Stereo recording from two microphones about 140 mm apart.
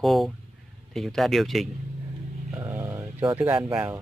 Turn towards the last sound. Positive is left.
turn(degrees=-5)  # may be behind; listen again after turning